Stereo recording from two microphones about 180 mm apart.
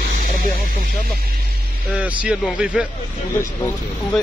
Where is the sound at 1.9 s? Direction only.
5° right (ahead or behind).